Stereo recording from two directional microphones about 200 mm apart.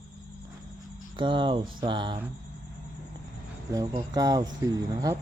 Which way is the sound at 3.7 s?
15° right (ahead or behind).